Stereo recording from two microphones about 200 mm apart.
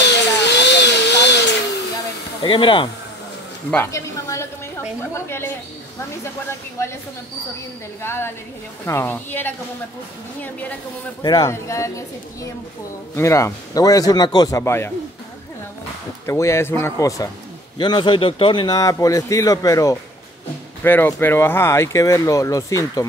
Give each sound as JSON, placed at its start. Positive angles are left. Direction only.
{"t": 0.0, "sound": "a sound", "side_deg": 60}
{"t": 2.4, "sound": "speech", "side_deg": 25}
{"t": 3.7, "sound": "a man's voice", "side_deg": 15}
{"t": 8.0, "sound": "a man's voice", "side_deg": 10}
{"t": 11.2, "sound": "a man's voice", "side_deg": 20}
{"t": 13.1, "sound": "a man's voice", "side_deg": 15}
{"t": 16.3, "sound": "a man's voice", "side_deg": 15}